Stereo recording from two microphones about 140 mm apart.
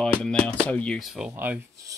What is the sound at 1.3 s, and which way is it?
Speech, 15° right (ahead or behind).